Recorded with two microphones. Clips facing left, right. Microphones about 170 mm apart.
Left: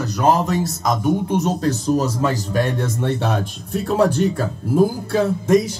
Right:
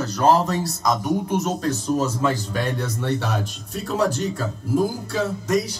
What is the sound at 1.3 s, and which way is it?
A man's voice, 35° left (ahead or behind).